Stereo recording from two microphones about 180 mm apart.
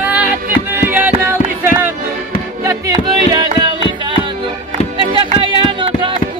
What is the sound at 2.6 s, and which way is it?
Music, 20° right (ahead or behind).